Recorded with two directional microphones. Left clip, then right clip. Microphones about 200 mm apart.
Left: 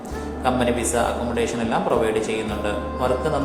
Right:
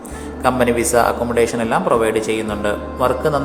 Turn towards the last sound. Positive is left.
turn(degrees=-25)  # may be behind; listen again after turning